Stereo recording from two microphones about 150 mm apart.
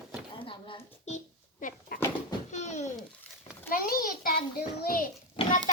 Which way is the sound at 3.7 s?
75° left (ahead or behind).